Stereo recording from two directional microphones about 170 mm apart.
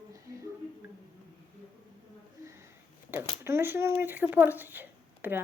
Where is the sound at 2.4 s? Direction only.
15° right (ahead or behind).